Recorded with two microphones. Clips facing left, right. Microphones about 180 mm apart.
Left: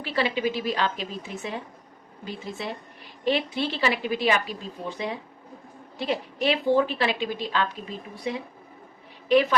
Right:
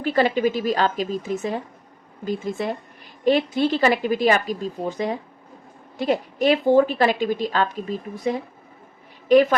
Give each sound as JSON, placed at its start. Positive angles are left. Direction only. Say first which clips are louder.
{"t": 0.0, "sound": "a woman's voice", "louder": "right 6 dB", "side_deg": -45}